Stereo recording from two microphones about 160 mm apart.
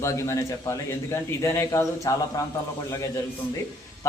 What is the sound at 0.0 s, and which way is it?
A man's voice, 20° left (ahead or behind).